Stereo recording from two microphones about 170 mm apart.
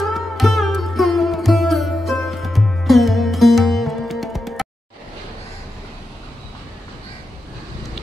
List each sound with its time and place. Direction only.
0.0 s sitar: centre (ahead or behind)